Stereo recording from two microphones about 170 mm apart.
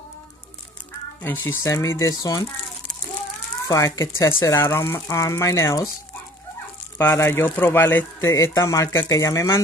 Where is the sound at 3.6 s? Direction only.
20° left (ahead or behind).